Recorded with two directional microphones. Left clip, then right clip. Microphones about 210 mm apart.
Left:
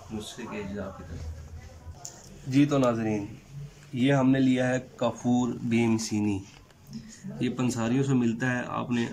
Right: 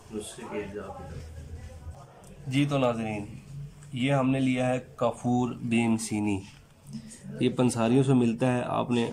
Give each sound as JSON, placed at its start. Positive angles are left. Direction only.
{"t": 2.5, "sound": "speech", "side_deg": -10}